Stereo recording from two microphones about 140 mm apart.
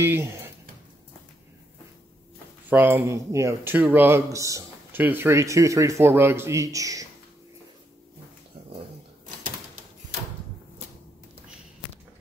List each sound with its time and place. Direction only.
0.0 s speech: 15° right (ahead or behind)
2.7 s speech: 15° right (ahead or behind)